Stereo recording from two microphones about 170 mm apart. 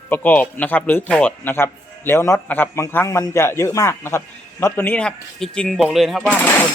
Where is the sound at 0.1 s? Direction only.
10° left (ahead or behind).